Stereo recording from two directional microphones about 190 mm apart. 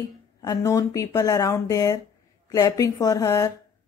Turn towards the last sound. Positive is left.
turn(degrees=15)  # may be behind; listen again after turning